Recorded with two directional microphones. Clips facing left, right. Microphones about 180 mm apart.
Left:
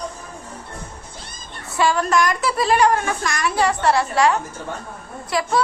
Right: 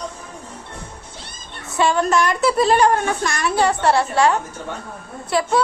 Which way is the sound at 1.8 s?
25° right (ahead or behind).